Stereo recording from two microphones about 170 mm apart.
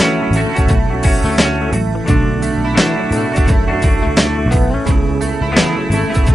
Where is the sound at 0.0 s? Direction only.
Centre (ahead or behind).